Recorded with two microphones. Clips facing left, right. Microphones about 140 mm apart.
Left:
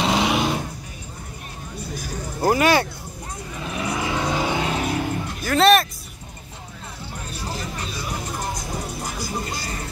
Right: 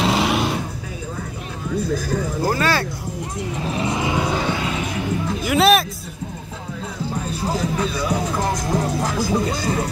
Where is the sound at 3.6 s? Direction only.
25° right (ahead or behind).